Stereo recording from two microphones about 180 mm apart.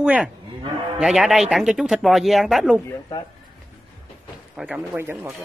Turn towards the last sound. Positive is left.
turn(degrees=-10)  # may be behind; listen again after turning